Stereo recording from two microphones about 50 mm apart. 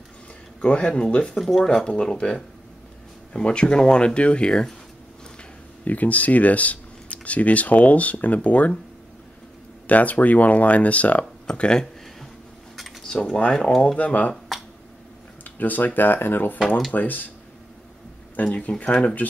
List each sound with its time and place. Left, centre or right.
0.7 s speech: left
1.2 s speech: centre
1.9 s speech: centre
5.9 s speech: left
9.8 s speech: left
11.4 s speech: centre
13.0 s speech: centre
13.9 s speech: left
15.4 s speech: left
18.3 s speech: left